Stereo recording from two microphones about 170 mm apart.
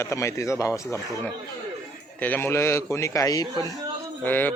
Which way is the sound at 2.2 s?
10° left (ahead or behind).